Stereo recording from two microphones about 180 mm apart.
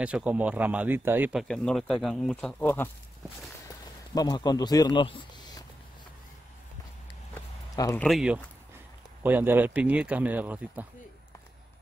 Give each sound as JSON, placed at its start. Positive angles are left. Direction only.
{"t": 0.0, "sound": "speech", "side_deg": -5}
{"t": 1.5, "sound": "speech", "side_deg": 5}
{"t": 3.6, "sound": "a sound", "side_deg": 20}
{"t": 7.7, "sound": "speech", "side_deg": 20}
{"t": 8.0, "sound": "speech", "side_deg": 0}